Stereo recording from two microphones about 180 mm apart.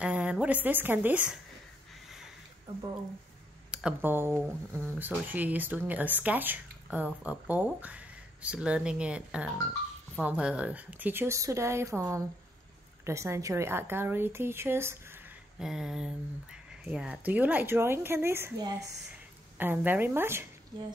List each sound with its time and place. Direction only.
0.0 s a woman's voice: 5° right (ahead or behind)
3.7 s speech: 10° right (ahead or behind)
15.6 s a sound: 5° right (ahead or behind)
16.8 s speech: 5° right (ahead or behind)